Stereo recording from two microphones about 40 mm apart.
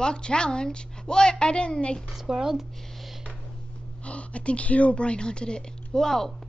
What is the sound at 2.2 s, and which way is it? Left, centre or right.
Speech, centre.